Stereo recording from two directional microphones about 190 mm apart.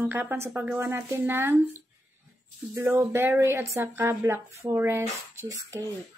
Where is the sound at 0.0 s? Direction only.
10° right (ahead or behind).